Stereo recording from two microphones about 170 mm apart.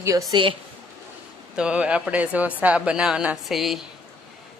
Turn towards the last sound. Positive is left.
turn(degrees=0)  # may be behind; listen again after turning